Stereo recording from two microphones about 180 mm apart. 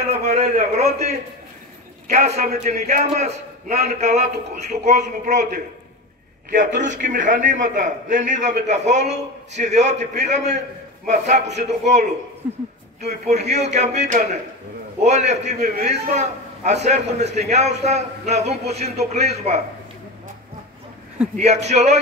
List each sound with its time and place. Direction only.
0.3 s a man's voice: 35° right (ahead or behind)
6.5 s a man's voice: 40° right (ahead or behind)
12.4 s a woman's voice: 10° right (ahead or behind)
13.0 s a man's voice: 40° right (ahead or behind)
21.4 s a man's voice: 40° right (ahead or behind)